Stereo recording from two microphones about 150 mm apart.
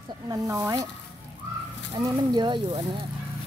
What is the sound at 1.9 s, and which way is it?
Speech, 30° right (ahead or behind).